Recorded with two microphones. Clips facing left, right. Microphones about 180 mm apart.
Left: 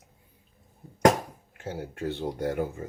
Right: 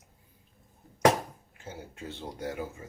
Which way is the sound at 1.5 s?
65° left (ahead or behind).